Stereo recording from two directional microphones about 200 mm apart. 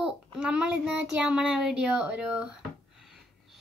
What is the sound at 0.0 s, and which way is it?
Child singing, 5° right (ahead or behind).